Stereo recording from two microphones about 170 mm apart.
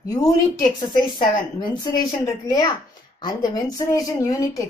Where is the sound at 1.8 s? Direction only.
25° left (ahead or behind).